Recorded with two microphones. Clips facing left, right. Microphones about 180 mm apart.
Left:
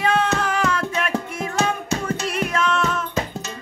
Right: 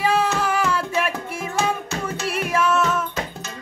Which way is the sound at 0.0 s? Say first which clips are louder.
Even; 5° right (ahead or behind).